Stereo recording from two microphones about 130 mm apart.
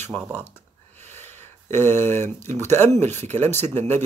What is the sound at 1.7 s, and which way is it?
Speech, 20° left (ahead or behind).